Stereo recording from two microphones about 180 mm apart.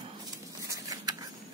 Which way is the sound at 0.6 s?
20° right (ahead or behind).